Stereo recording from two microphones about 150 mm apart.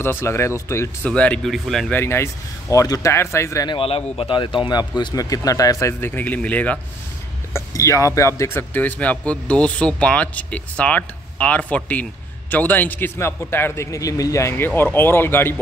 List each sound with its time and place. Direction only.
0.0 s speech: 15° left (ahead or behind)
1.1 s speech: 10° left (ahead or behind)
2.0 s speech: 15° left (ahead or behind)
3.6 s a man's voice: 35° left (ahead or behind); by 6.8 s 10° left (ahead or behind)
7.5 s speech: 20° left (ahead or behind)